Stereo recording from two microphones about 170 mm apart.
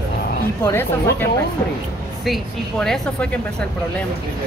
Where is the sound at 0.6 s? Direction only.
15° left (ahead or behind).